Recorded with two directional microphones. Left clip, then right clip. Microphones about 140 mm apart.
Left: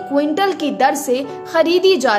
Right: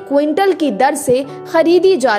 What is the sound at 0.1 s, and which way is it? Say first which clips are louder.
A woman's voice: right 4 dB; 45° right (ahead or behind).